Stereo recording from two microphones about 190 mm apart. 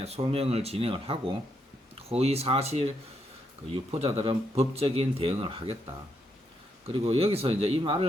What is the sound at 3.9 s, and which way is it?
Speech, 30° right (ahead or behind).